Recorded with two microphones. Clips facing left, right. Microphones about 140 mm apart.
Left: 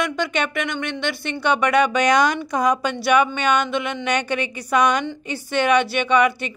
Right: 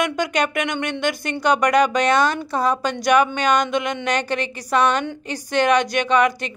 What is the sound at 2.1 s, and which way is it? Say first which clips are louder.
Speech: even; 15° left (ahead or behind).